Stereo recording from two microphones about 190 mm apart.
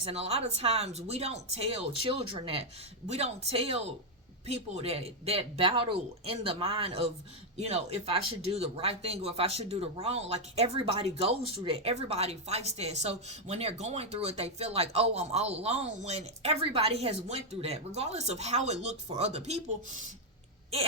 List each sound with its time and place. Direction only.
0.0 s speech: 30° right (ahead or behind)